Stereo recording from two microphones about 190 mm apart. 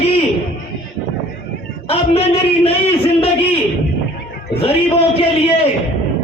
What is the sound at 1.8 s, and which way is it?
A man's voice, 30° left (ahead or behind).